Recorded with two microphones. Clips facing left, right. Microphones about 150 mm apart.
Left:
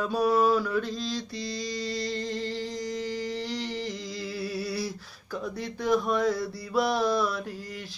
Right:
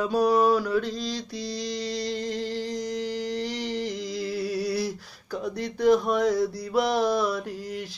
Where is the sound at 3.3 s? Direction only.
15° right (ahead or behind).